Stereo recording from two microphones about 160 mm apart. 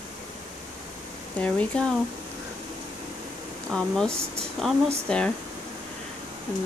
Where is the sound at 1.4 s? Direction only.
10° left (ahead or behind).